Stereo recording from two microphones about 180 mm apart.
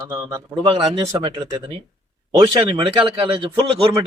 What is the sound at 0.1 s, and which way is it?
A man's voice, 15° right (ahead or behind).